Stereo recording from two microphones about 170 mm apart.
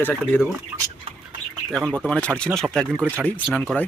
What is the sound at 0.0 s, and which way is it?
Speech, 10° left (ahead or behind).